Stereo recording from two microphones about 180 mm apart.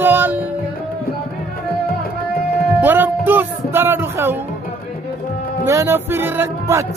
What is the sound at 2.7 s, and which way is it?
Speech, 10° right (ahead or behind).